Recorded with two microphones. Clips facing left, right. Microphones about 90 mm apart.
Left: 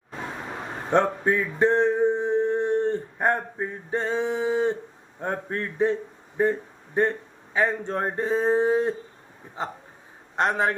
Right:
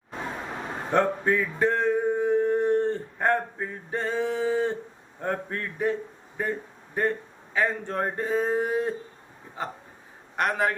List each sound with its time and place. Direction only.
0.9 s a man's voice: 20° left (ahead or behind)
10.3 s a man's voice: 25° left (ahead or behind)